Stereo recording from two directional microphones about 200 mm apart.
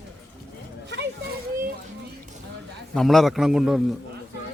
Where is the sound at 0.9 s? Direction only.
60° right (ahead or behind).